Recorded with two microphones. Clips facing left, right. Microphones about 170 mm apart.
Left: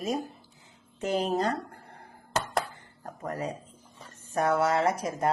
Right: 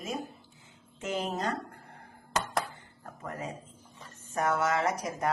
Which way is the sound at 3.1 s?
35° left (ahead or behind).